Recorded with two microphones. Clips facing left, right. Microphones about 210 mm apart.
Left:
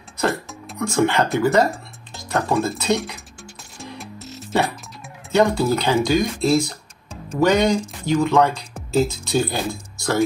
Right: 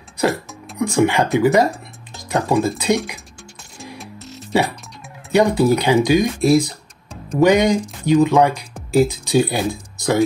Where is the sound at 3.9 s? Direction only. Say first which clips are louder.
Left 1 dB; centre (ahead or behind).